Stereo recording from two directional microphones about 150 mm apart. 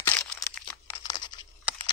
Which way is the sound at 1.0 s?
30° left (ahead or behind).